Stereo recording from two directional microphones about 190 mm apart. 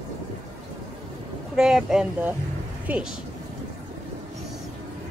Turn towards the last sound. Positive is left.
turn(degrees=-5)  # may be behind; listen again after turning